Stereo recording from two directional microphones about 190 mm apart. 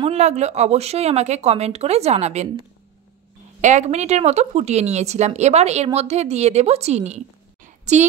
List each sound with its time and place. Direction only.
0.0 s speech: 35° right (ahead or behind)
3.6 s speech: 40° right (ahead or behind)
7.6 s a sound: 35° right (ahead or behind)